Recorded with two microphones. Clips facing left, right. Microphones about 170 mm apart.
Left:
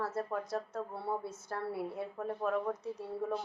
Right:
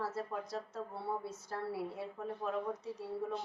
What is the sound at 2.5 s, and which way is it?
Speech, 50° left (ahead or behind).